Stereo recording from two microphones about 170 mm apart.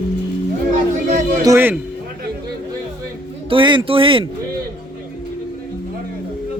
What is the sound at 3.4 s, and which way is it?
Speech, 30° right (ahead or behind).